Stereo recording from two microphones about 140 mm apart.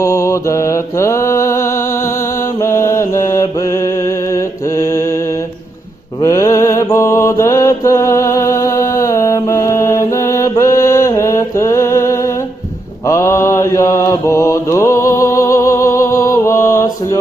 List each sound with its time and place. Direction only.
0.0 s mantra: 20° left (ahead or behind)
2.6 s mantra: 20° left (ahead or behind)
6.2 s mantra: 25° left (ahead or behind)